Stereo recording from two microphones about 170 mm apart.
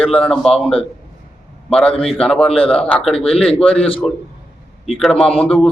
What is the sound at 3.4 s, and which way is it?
Speech, 5° left (ahead or behind).